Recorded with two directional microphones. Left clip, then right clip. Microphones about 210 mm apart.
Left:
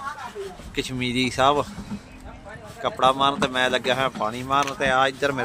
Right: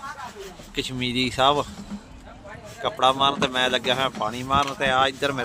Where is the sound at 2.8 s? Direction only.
Centre (ahead or behind).